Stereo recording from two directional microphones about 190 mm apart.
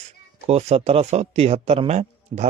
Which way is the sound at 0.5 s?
35° right (ahead or behind).